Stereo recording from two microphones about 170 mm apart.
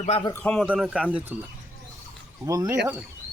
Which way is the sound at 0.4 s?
5° left (ahead or behind).